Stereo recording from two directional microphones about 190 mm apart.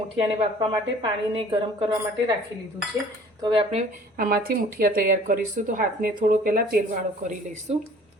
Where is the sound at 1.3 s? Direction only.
25° right (ahead or behind).